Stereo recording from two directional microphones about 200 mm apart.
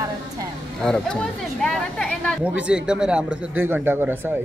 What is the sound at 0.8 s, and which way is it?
Speech, 5° left (ahead or behind).